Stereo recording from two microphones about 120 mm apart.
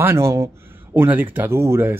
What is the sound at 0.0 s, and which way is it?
Speech, 20° right (ahead or behind).